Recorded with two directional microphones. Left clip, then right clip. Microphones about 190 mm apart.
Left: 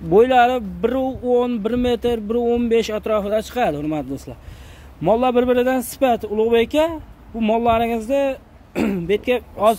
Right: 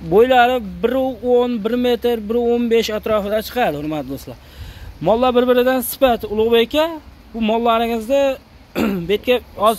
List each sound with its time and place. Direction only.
0.1 s speech: 5° left (ahead or behind)